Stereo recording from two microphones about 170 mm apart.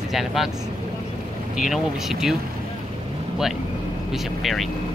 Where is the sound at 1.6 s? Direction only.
5° right (ahead or behind).